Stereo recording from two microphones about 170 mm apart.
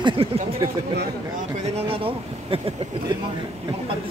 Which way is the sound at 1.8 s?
35° right (ahead or behind).